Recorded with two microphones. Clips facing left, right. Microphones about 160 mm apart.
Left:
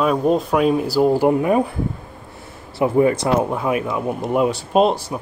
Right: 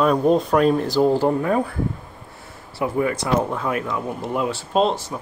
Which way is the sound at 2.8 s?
25° left (ahead or behind).